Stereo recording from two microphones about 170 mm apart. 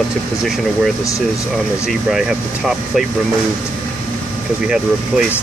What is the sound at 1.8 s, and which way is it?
Speech, 5° right (ahead or behind).